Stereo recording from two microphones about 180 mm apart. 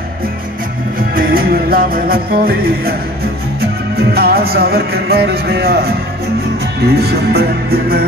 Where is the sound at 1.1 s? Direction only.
55° right (ahead or behind).